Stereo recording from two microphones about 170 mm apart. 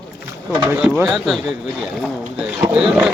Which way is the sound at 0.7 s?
5° right (ahead or behind).